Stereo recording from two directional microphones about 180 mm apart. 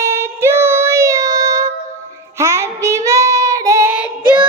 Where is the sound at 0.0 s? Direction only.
15° right (ahead or behind).